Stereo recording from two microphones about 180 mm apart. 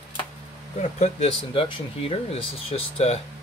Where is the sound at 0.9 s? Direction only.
35° left (ahead or behind).